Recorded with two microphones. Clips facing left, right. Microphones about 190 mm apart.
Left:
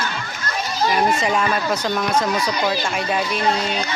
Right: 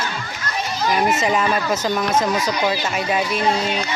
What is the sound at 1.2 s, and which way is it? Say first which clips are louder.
Music: right 1 dB; 5° right (ahead or behind).